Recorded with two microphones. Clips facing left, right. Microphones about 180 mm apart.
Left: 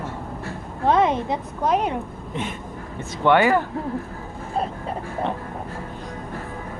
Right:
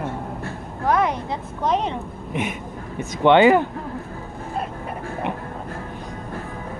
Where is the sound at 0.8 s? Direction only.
25° left (ahead or behind).